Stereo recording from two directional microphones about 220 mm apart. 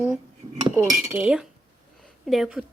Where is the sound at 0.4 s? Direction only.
15° right (ahead or behind).